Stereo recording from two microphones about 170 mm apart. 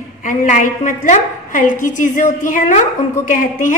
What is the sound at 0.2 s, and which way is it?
A woman's voice, 50° left (ahead or behind).